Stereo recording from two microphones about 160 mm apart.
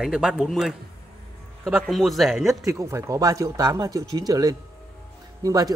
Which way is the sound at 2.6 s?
20° right (ahead or behind).